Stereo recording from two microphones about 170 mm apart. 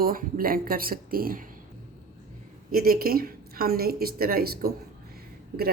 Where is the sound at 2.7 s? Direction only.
60° right (ahead or behind).